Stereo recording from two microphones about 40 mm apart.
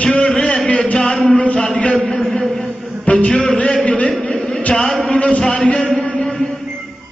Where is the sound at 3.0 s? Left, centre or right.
Left.